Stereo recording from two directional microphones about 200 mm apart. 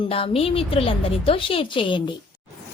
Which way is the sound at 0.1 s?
30° left (ahead or behind).